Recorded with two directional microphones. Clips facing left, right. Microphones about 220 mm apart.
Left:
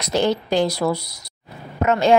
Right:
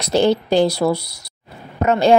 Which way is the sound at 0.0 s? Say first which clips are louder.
Right 4 dB; 30° right (ahead or behind).